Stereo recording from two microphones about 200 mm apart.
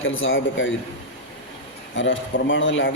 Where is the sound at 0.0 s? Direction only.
80° left.